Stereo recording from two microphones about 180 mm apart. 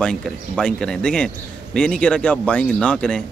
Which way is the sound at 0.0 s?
5° left (ahead or behind).